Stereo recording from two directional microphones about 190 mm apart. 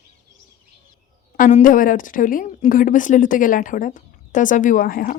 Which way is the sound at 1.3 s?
45° left (ahead or behind).